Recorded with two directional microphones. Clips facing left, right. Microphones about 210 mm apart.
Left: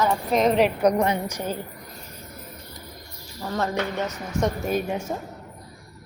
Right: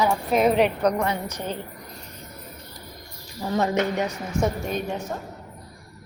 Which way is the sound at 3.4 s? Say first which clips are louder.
Right 3 dB; 15° right (ahead or behind).